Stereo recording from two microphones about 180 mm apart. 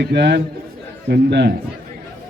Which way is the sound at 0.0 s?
65° right (ahead or behind).